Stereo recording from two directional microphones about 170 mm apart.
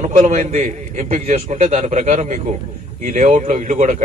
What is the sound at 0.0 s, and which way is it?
A man's voice, 40° right (ahead or behind).